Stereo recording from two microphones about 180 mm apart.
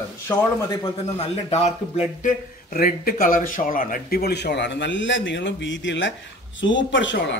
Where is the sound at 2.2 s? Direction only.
45° left (ahead or behind).